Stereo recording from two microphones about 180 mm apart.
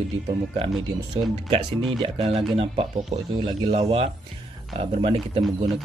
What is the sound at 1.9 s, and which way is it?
Speech, 30° right (ahead or behind).